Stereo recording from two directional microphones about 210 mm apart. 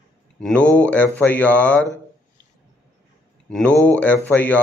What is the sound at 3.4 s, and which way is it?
Speech, 5° left (ahead or behind).